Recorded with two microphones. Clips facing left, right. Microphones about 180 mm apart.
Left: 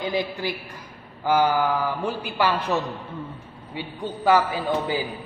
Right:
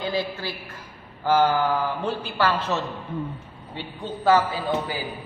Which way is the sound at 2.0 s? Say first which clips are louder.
Even; 10° left (ahead or behind).